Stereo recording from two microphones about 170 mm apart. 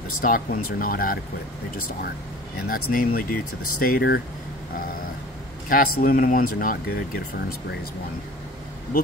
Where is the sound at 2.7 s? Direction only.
55° left (ahead or behind).